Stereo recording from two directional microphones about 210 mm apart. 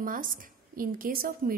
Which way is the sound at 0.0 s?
40° right (ahead or behind).